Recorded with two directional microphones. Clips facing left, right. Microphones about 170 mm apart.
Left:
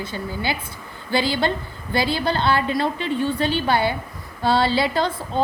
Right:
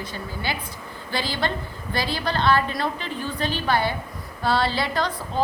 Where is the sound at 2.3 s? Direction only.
30° left (ahead or behind).